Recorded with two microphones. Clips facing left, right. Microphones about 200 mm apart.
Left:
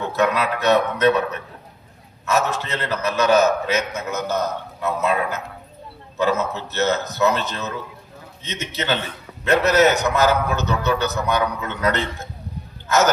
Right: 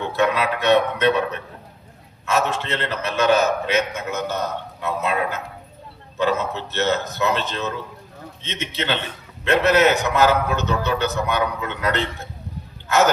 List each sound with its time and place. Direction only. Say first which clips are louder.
0.2 s a man's voice: even; 40° left (ahead or behind)
2.2 s a man's voice: even; 40° left (ahead or behind)